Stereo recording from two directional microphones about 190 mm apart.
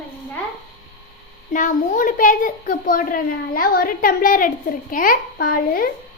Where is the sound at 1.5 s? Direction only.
40° left (ahead or behind).